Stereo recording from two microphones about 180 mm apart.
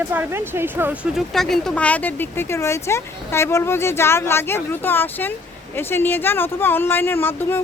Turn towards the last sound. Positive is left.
turn(degrees=10)  # may be behind; listen again after turning